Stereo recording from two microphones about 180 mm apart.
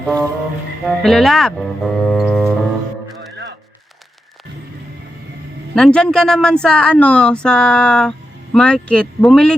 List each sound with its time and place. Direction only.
0.0 s music: 5° left (ahead or behind)
0.9 s speech: centre (ahead or behind)
5.7 s speech: 5° left (ahead or behind)